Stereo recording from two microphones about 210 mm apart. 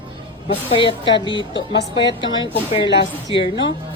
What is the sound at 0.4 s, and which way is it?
Speech, 25° left (ahead or behind).